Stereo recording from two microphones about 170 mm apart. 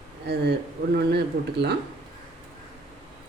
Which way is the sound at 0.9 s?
75° right (ahead or behind).